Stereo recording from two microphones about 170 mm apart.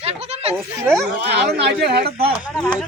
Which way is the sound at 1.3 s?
80° right.